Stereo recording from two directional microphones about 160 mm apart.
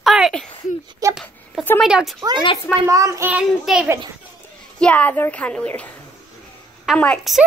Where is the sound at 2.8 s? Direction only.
20° right (ahead or behind).